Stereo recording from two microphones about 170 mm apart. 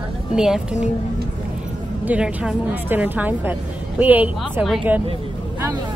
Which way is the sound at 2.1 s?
5° right (ahead or behind).